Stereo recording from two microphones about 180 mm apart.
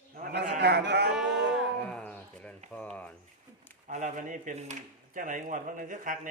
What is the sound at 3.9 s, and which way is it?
Speech, 40° right (ahead or behind).